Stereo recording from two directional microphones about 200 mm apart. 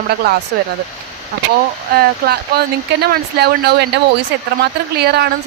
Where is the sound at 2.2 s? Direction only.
50° right (ahead or behind).